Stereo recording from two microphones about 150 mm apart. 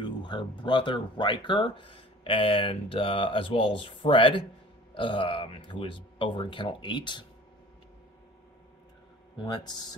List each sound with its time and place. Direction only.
0.0 s speech: 30° left (ahead or behind)
9.4 s speech: 30° left (ahead or behind)